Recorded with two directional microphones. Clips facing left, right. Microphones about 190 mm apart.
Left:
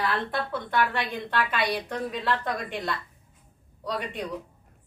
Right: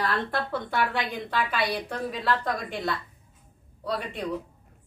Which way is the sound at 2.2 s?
Centre (ahead or behind).